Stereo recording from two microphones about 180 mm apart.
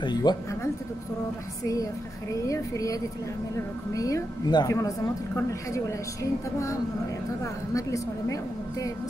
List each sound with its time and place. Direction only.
0.0 s a woman's voice: 25° left (ahead or behind)
1.6 s a woman's voice: 20° left (ahead or behind)
7.7 s a woman's voice: 20° left (ahead or behind)